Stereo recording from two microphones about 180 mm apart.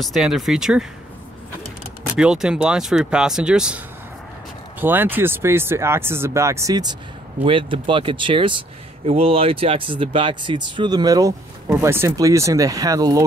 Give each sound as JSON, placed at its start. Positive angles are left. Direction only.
{"t": 0.0, "sound": "speech", "side_deg": 0}
{"t": 2.1, "sound": "speech", "side_deg": -5}